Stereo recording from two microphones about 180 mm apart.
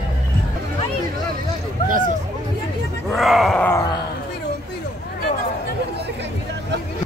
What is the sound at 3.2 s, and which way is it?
Groan, centre (ahead or behind).